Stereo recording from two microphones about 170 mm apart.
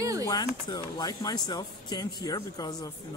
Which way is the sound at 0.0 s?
20° right (ahead or behind).